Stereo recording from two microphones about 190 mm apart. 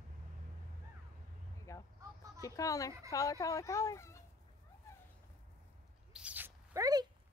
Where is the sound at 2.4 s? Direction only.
15° left (ahead or behind).